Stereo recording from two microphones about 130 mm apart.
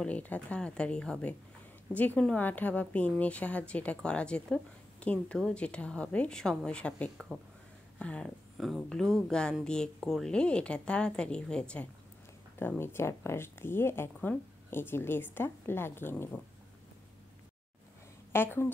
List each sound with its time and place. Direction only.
0.0 s speech: 10° left (ahead or behind)
18.3 s speech: 15° left (ahead or behind)